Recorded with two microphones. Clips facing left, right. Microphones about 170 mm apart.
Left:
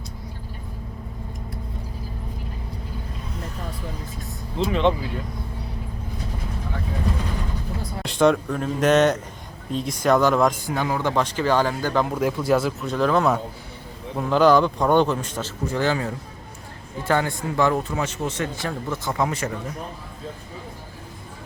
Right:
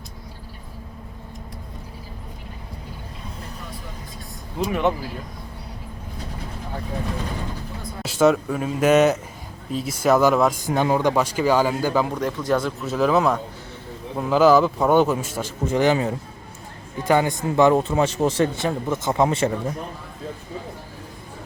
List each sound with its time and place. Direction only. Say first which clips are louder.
4.5 s a man's voice: left 1 dB; 10° right (ahead or behind)
8.0 s a man's voice: right 1 dB; 5° right (ahead or behind)
10.8 s a man's voice: right 9 dB; 20° right (ahead or behind)
11.1 s a man's voice: right 2 dB; 10° right (ahead or behind)
12.1 s a man's voice: left 2 dB; 10° left (ahead or behind); by 18.4 s 35° right (ahead or behind)
18.5 s a man's voice: right 4 dB; 20° right (ahead or behind)